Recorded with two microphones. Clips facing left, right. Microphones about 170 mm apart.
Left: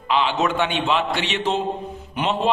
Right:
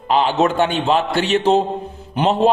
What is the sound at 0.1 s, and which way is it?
A man's voice, 45° right (ahead or behind).